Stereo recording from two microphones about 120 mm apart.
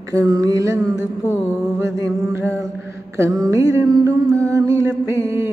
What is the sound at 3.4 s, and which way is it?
Music, 30° right (ahead or behind).